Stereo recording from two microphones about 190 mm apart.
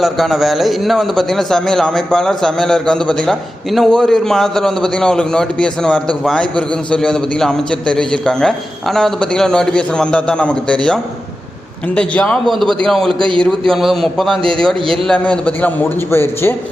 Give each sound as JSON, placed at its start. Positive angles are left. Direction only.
{"t": 0.0, "sound": "a man's voice", "side_deg": 0}
{"t": 13.1, "sound": "a man's voice", "side_deg": -25}
{"t": 13.4, "sound": "a man's voice", "side_deg": 0}